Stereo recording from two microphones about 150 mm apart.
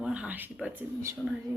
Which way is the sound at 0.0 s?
5° right (ahead or behind).